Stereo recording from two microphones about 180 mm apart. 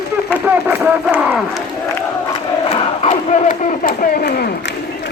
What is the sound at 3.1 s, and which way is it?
Crowd, 45° left (ahead or behind).